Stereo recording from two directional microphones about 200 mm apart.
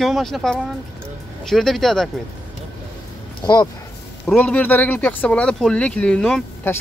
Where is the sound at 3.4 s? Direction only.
20° left (ahead or behind).